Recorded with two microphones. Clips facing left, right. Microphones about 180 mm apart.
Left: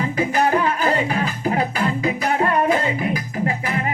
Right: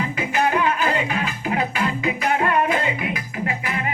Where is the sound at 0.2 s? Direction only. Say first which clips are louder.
Left 3 dB; 40° left (ahead or behind).